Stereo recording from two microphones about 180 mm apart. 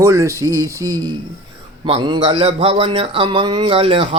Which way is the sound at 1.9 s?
30° right (ahead or behind).